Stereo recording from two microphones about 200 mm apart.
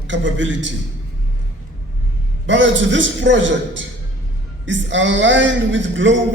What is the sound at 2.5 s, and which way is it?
A man's voice, 65° right (ahead or behind).